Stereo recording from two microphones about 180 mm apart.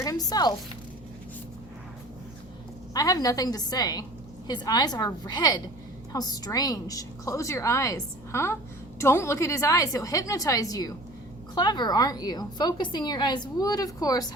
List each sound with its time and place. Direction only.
0.0 s zipper: 20° left (ahead or behind)
2.9 s a woman's voice: 20° left (ahead or behind)